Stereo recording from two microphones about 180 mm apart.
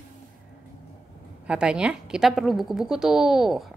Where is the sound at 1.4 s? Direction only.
5° right (ahead or behind).